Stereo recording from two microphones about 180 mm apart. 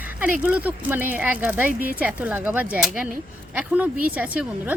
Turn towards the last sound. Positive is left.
turn(degrees=-10)  # may be behind; listen again after turning